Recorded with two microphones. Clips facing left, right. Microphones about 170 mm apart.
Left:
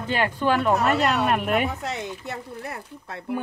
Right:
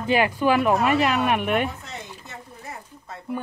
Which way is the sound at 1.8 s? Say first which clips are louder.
Left 8 dB; 70° left (ahead or behind).